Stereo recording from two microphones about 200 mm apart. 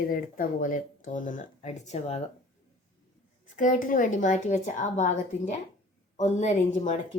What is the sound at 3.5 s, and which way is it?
Speech, 40° left (ahead or behind).